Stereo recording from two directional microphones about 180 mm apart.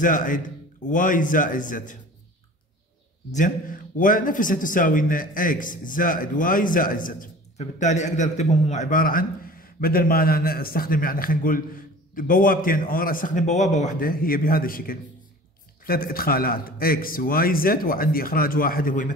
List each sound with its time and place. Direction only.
0.0 s a man's voice: 50° left (ahead or behind)
3.3 s a man's voice: 45° left (ahead or behind)